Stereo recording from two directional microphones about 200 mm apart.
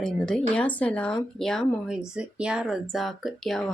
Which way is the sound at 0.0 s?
5° left (ahead or behind).